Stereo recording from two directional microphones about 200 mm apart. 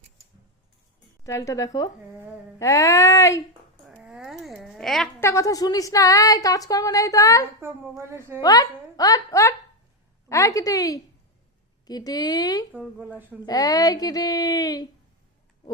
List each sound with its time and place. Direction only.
1.2 s a woman's voice: 15° left (ahead or behind)
3.8 s a sound: 5° right (ahead or behind)
5.2 s a woman's voice: 15° left (ahead or behind)
12.7 s speech: 5° right (ahead or behind)
13.4 s a woman's voice: 20° left (ahead or behind)